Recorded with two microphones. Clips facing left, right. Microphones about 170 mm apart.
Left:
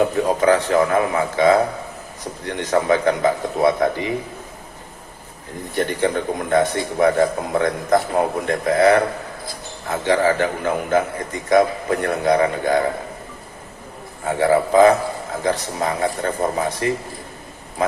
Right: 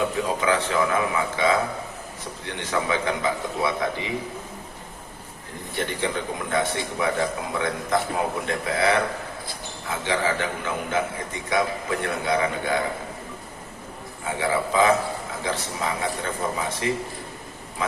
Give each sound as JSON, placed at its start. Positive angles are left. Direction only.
{"t": 0.0, "sound": "a man's voice", "side_deg": 40}
{"t": 5.7, "sound": "a man's voice", "side_deg": 45}
{"t": 14.3, "sound": "speech", "side_deg": 40}